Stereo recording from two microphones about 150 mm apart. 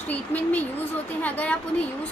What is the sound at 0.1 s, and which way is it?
A woman's voice, 10° left (ahead or behind).